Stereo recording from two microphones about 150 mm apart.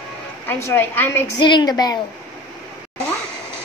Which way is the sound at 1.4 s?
30° left (ahead or behind).